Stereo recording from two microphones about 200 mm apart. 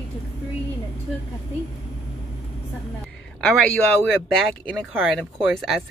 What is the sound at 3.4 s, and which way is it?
Speech, 5° left (ahead or behind).